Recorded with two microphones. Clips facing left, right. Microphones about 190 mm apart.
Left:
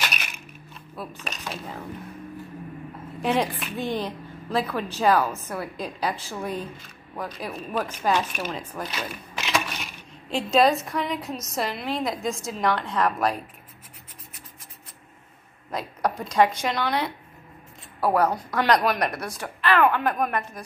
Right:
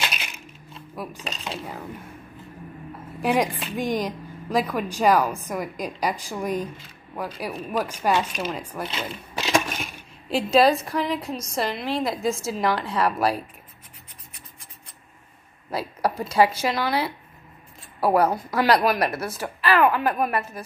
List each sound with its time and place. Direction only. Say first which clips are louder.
0.0 s crushing: right 1 dB; 25° right (ahead or behind)
1.2 s speech: right 2 dB; 25° right (ahead or behind)
3.2 s a woman's voice: right 2 dB; 10° right (ahead or behind)
8.8 s speech: right 2 dB; 25° right (ahead or behind)
9.5 s crushing: right 4 dB; 45° right (ahead or behind)
10.3 s a woman's voice: right 2 dB; centre (ahead or behind)
15.7 s a woman's voice: right 2 dB; 5° right (ahead or behind)